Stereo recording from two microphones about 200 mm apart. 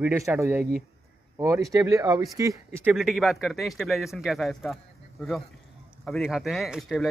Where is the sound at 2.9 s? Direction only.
Centre (ahead or behind).